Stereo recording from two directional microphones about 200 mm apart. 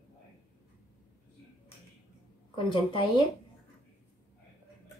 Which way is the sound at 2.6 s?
25° left (ahead or behind).